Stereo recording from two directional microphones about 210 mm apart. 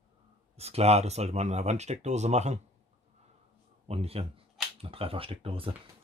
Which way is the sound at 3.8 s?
30° right (ahead or behind).